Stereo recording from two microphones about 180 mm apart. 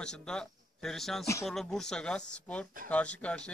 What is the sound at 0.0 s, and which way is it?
Speech, 5° left (ahead or behind).